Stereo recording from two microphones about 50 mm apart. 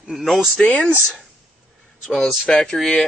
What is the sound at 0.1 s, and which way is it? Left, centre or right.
Speech, centre.